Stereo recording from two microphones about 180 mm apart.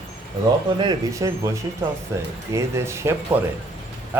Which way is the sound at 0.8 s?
20° right (ahead or behind).